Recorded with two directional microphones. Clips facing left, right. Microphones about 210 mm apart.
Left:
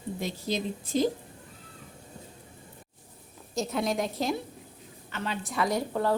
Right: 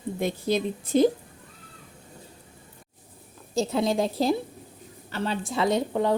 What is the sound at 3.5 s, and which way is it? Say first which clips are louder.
A woman's voice: right 5 dB; 30° right (ahead or behind).